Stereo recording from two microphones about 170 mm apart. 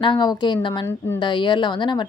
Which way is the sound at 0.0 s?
25° left (ahead or behind).